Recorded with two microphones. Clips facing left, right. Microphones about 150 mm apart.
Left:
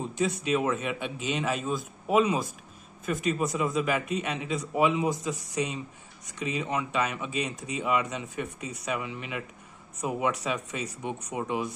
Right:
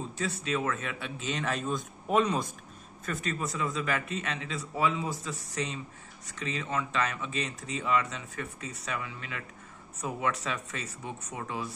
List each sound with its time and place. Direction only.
0.1 s speech: 15° left (ahead or behind)